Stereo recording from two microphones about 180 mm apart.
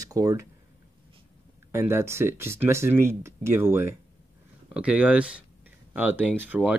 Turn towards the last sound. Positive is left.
turn(degrees=-10)  # may be behind; listen again after turning